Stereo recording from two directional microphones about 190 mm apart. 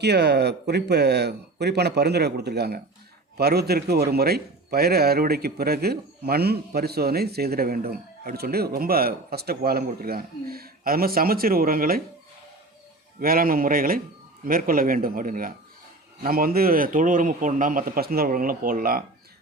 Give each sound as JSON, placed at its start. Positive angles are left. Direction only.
{"t": 0.0, "sound": "a man's voice", "side_deg": -60}
{"t": 13.1, "sound": "a man's voice", "side_deg": -50}